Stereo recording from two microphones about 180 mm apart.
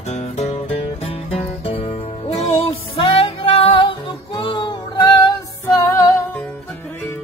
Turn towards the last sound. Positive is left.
turn(degrees=15)  # may be behind; listen again after turning